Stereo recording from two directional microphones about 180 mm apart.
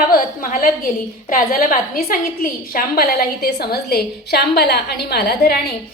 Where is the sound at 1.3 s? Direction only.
55° left (ahead or behind).